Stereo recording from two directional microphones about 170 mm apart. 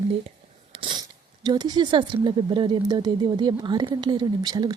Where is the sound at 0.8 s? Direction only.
30° right (ahead or behind).